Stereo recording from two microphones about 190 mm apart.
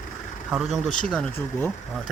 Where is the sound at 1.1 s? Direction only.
5° left (ahead or behind).